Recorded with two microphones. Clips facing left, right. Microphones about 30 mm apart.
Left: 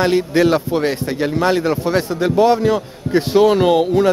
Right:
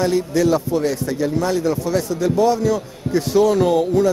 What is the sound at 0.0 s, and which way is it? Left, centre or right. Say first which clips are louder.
A man's voice: left 3 dB; left.